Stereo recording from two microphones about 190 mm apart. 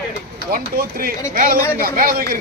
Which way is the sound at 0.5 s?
50° right (ahead or behind).